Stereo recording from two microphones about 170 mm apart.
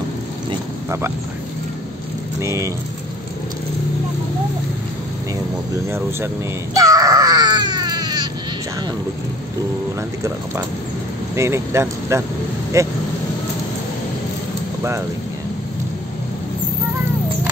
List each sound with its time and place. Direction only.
0.8 s speech: 15° right (ahead or behind)
2.4 s speech: 15° right (ahead or behind)
6.7 s baby cry: 20° right (ahead or behind)
11.3 s speech: 15° right (ahead or behind)
14.8 s speech: 15° right (ahead or behind)